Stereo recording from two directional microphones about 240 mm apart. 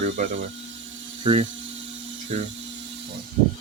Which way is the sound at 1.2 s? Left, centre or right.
Right.